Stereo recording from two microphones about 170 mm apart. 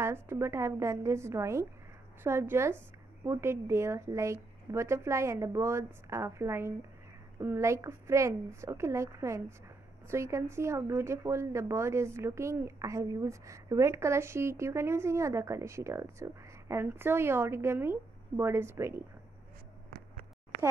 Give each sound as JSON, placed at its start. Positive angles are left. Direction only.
{"t": 0.0, "sound": "speech", "side_deg": -15}